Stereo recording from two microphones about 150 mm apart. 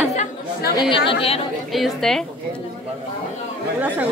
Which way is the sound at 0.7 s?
35° left (ahead or behind).